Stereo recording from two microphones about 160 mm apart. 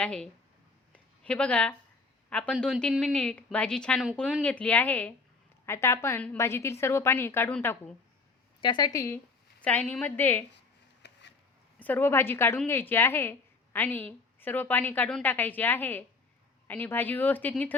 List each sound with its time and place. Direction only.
0.0 s a woman's voice: 5° left (ahead or behind)
0.9 s a sound: 5° left (ahead or behind)
2.3 s a woman's voice: 5° left (ahead or behind)
8.6 s speech: 25° left (ahead or behind)
9.1 s a woman's voice: 10° left (ahead or behind)
11.0 s a sound: 90° left
11.8 s a woman's voice: 10° left (ahead or behind)